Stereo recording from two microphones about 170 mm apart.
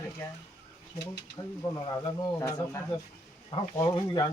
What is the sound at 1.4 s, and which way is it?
Speech, 25° left (ahead or behind).